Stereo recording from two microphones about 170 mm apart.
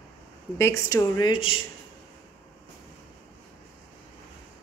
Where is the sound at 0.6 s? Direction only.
15° left (ahead or behind).